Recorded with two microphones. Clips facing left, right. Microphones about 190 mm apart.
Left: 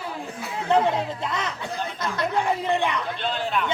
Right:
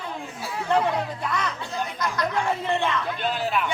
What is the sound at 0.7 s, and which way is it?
Speech, 20° left (ahead or behind).